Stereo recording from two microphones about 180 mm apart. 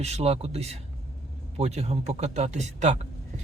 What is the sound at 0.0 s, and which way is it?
Speech, 35° right (ahead or behind).